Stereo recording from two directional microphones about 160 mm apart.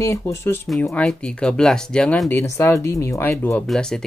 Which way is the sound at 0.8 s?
10° left (ahead or behind).